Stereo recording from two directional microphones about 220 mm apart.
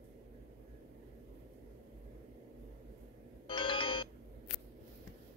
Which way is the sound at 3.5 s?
25° left (ahead or behind).